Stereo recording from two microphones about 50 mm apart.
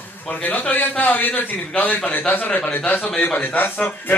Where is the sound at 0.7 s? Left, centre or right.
Left.